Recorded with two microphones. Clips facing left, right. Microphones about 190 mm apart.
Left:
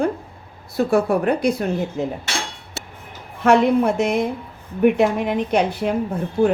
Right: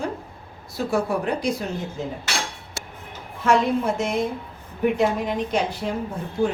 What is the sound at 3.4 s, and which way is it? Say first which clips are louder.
A woman's voice: left 5 dB; 65° left (ahead or behind).